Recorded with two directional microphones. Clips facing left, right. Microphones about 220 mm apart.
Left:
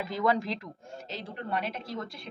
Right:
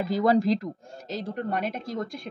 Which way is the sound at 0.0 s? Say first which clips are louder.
Right 6 dB; 35° right (ahead or behind).